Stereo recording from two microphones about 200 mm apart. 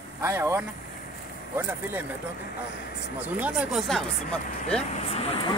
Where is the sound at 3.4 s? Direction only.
5° right (ahead or behind).